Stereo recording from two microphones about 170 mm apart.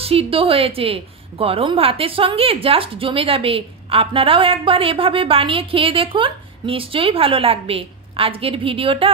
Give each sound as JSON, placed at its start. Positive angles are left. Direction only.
{"t": 0.0, "sound": "a woman's voice", "side_deg": -35}